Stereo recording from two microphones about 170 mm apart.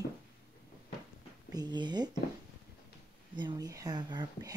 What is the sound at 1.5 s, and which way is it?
Speech, 25° right (ahead or behind).